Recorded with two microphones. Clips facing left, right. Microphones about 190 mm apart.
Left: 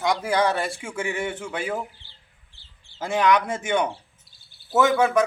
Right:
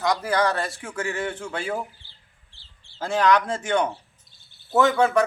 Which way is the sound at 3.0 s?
10° left (ahead or behind).